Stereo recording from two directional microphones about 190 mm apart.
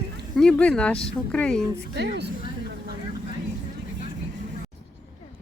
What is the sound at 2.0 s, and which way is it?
Speech, 60° right (ahead or behind).